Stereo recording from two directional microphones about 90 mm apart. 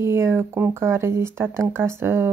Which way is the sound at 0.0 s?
30° right (ahead or behind).